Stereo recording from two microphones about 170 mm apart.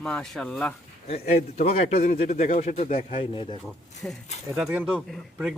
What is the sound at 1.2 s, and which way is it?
Speech, 60° left (ahead or behind).